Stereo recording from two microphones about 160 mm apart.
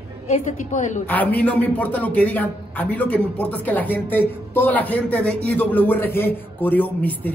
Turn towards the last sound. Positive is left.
turn(degrees=10)  # may be behind; listen again after turning